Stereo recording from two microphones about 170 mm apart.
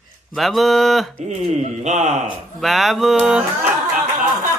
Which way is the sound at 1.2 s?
40° right (ahead or behind).